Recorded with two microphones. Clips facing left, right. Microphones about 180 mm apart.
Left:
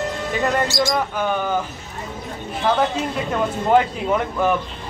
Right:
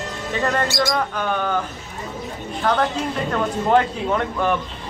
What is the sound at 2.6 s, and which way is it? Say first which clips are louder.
Speech: left 1 dB; 5° left (ahead or behind).